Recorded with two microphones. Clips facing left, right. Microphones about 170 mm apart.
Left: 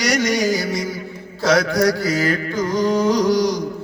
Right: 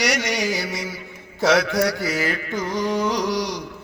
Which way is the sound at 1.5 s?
40° left (ahead or behind).